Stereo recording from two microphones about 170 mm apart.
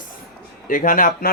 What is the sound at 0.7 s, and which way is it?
Speech, 55° left (ahead or behind).